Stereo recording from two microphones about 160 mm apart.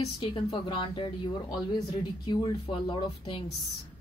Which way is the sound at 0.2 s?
30° left (ahead or behind).